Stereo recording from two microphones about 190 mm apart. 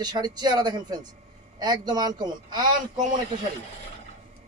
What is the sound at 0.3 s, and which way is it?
A man's voice, 20° right (ahead or behind).